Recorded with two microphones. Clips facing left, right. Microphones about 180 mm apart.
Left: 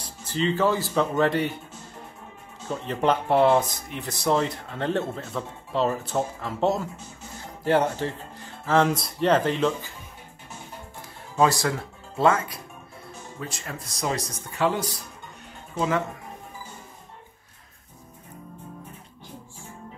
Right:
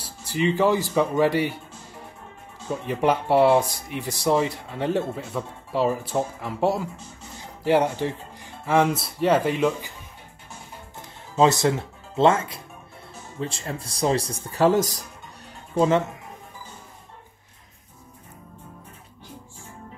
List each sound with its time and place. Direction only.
0.0 s speech: 10° right (ahead or behind)
11.3 s speech: 25° right (ahead or behind); by 15.0 s 45° right (ahead or behind)